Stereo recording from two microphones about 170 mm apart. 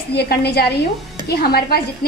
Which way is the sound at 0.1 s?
70° left (ahead or behind).